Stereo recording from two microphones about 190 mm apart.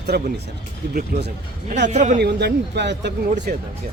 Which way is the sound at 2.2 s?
60° right (ahead or behind).